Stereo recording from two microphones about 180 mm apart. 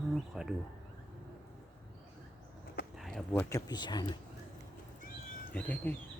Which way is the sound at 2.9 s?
Centre (ahead or behind).